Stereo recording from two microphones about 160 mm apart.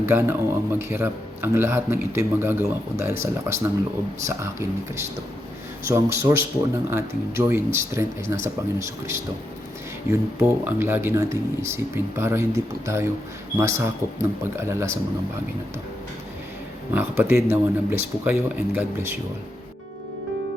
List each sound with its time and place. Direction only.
0.0 s a man's voice: 15° right (ahead or behind)
5.9 s a man's voice: 15° right (ahead or behind)
16.9 s a man's voice: 10° right (ahead or behind)